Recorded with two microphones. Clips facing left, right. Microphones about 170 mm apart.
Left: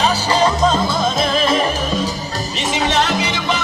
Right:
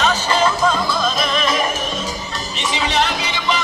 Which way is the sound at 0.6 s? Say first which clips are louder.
Left 2 dB; 20° left (ahead or behind).